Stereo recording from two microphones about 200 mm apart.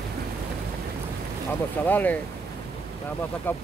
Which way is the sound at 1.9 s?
10° left (ahead or behind).